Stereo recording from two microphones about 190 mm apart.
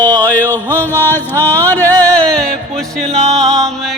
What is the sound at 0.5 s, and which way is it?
Music, 10° left (ahead or behind).